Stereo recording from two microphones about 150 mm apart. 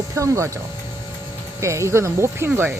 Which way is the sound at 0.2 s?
20° right (ahead or behind).